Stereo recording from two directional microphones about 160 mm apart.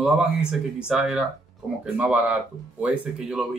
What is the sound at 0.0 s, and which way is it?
Speech, 5° right (ahead or behind).